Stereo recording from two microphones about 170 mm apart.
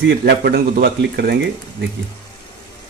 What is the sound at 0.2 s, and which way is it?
A man's voice, 65° right (ahead or behind).